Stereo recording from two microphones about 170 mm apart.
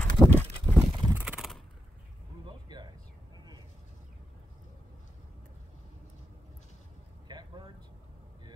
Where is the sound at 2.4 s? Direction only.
25° right (ahead or behind).